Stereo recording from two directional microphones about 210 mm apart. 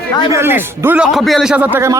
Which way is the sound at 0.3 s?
10° right (ahead or behind).